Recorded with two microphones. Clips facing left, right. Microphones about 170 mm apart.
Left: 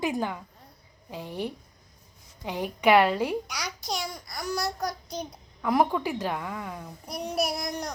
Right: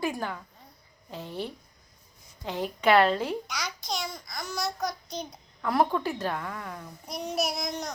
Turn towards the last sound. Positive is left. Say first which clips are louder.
# left 1 dB
turn(degrees=10)  # may be behind; listen again after turning